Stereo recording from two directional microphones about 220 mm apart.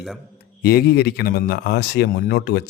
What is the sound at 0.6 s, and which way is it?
Speech, 45° left (ahead or behind).